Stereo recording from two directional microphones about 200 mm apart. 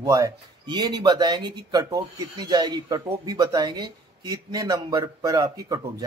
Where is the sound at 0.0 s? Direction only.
15° right (ahead or behind).